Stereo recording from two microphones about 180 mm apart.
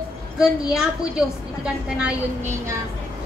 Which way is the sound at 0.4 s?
5° right (ahead or behind).